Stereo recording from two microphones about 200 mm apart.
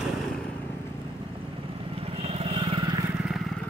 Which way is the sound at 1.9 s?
30° right (ahead or behind).